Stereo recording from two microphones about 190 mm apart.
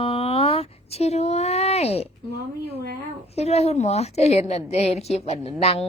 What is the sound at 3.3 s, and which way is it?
A woman's voice, 35° left (ahead or behind).